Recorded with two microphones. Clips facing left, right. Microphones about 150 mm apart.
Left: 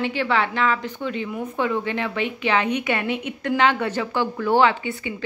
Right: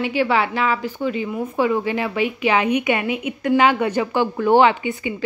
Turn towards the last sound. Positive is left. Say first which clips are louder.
# right 4 dB
turn(degrees=-15)  # may be behind; listen again after turning